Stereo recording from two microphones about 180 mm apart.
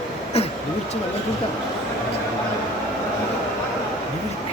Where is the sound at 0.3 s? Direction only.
35° left (ahead or behind).